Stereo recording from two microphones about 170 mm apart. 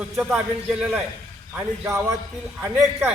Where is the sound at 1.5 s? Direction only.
15° right (ahead or behind).